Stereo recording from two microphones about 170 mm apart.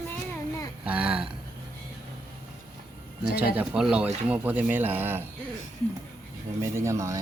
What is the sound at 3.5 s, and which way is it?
Speech, 5° right (ahead or behind).